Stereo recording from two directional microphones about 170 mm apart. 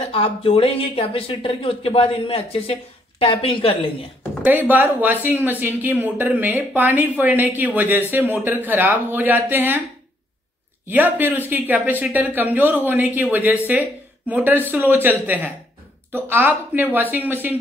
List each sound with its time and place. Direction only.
0.1 s speech: 35° left (ahead or behind)
4.5 s speech: 10° right (ahead or behind)
10.9 s speech: 10° right (ahead or behind)